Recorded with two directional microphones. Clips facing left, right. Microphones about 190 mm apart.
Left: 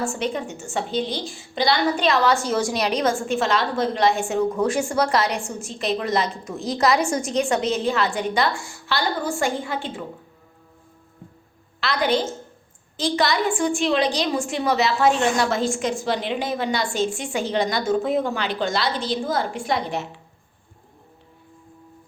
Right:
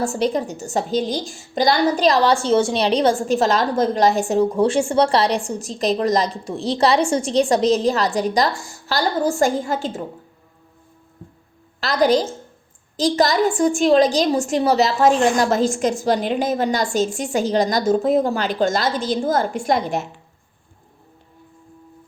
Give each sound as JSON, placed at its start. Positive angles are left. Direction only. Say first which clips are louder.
{"t": 0.0, "sound": "a woman's voice", "louder": "right 5 dB", "side_deg": -35}
{"t": 11.8, "sound": "a woman's voice", "louder": "right 5 dB", "side_deg": -40}